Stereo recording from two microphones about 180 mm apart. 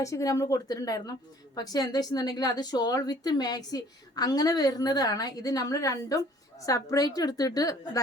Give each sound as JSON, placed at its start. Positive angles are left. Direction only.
{"t": 0.0, "sound": "a woman's voice", "side_deg": 20}